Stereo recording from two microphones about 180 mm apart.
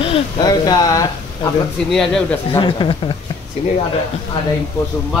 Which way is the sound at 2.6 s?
25° left (ahead or behind).